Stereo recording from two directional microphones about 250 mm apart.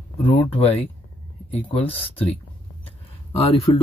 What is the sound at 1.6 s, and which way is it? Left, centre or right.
Speech, left.